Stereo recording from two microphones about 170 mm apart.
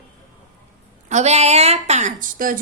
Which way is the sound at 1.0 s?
40° right (ahead or behind).